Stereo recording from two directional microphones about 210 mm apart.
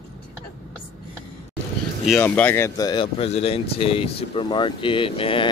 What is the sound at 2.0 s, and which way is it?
Speech, 10° left (ahead or behind).